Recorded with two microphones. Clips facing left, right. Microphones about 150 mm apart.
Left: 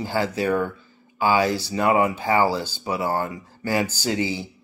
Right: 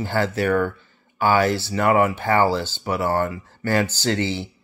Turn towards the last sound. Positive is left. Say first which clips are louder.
# right 2 dB
turn(degrees=15)  # may be behind; listen again after turning